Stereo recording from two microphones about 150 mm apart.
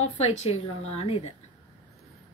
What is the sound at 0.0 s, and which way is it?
A woman's voice, 50° left (ahead or behind).